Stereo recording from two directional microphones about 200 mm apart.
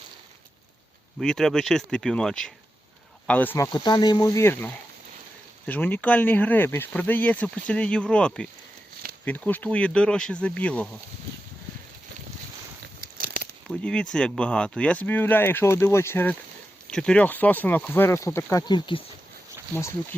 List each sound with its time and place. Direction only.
1.2 s speech: centre (ahead or behind)
13.0 s biting: 50° right (ahead or behind)
13.7 s speech: 5° left (ahead or behind); by 19.0 s 25° left (ahead or behind)